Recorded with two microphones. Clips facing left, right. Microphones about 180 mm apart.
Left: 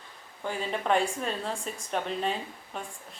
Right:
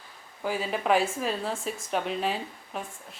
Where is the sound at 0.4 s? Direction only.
5° right (ahead or behind).